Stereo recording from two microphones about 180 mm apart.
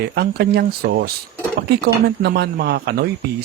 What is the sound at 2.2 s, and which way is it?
Speech, 60° right (ahead or behind).